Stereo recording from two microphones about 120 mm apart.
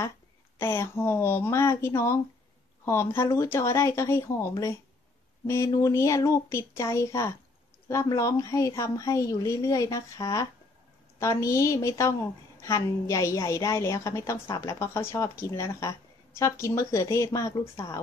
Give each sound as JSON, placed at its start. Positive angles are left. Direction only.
{"t": 0.6, "sound": "a woman's voice", "side_deg": 20}